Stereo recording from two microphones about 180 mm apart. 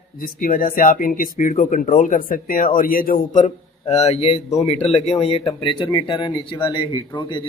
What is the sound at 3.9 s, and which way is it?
Speech, 35° left (ahead or behind).